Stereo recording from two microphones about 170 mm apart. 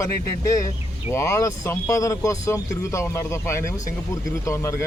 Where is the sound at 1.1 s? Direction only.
20° left (ahead or behind).